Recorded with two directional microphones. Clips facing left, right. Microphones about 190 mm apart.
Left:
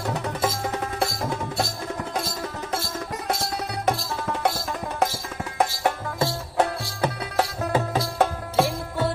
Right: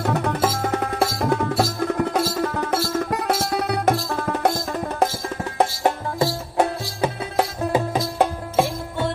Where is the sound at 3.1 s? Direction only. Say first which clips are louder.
Right 6 dB; 70° right (ahead or behind).